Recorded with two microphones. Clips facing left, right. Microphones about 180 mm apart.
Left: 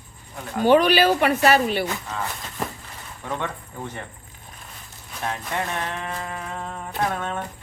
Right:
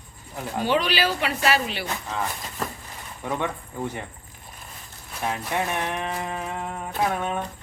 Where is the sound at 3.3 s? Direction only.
10° right (ahead or behind).